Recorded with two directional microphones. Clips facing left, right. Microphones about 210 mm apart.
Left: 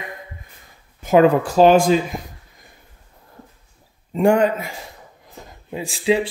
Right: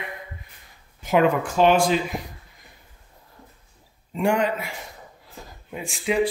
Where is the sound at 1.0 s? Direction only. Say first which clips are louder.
Left 6 dB; 40° left (ahead or behind).